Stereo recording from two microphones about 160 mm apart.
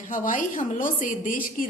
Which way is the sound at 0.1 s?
55° left (ahead or behind).